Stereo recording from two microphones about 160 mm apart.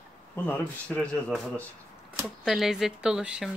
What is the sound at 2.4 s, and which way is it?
Speech, centre (ahead or behind).